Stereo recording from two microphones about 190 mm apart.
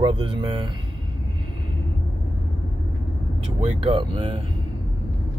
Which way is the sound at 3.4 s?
30° right (ahead or behind).